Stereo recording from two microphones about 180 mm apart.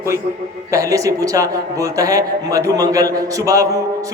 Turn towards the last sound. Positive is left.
turn(degrees=-20)  # may be behind; listen again after turning